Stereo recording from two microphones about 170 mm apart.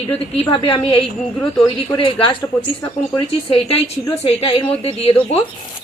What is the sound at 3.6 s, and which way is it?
A woman's voice, 35° left (ahead or behind).